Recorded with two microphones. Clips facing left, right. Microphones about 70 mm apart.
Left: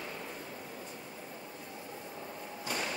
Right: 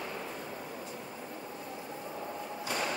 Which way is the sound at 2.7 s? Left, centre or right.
Right.